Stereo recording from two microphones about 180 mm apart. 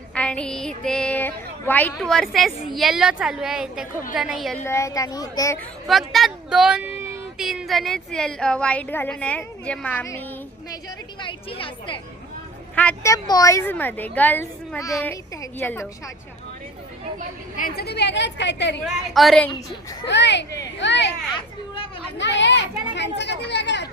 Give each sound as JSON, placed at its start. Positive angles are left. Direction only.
{"t": 0.1, "sound": "music", "side_deg": 5}
{"t": 0.9, "sound": "a woman's voice", "side_deg": 5}
{"t": 4.6, "sound": "a child's voice", "side_deg": 15}
{"t": 5.9, "sound": "a woman's voice", "side_deg": 0}
{"t": 11.2, "sound": "a child's voice", "side_deg": 30}
{"t": 12.7, "sound": "a woman's voice", "side_deg": 10}
{"t": 17.6, "sound": "a woman's voice", "side_deg": 60}
{"t": 18.9, "sound": "a woman's voice", "side_deg": 0}
{"t": 20.1, "sound": "a woman's voice", "side_deg": 75}
{"t": 22.2, "sound": "a child's voice", "side_deg": 80}